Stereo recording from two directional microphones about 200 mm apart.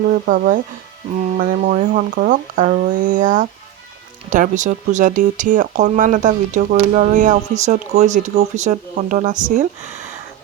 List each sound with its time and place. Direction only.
0.1 s speech: 45° right (ahead or behind)